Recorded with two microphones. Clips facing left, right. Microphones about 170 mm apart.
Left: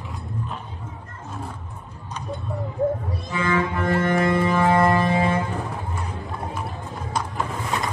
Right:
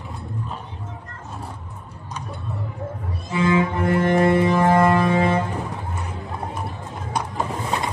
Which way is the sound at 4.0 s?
25° right (ahead or behind).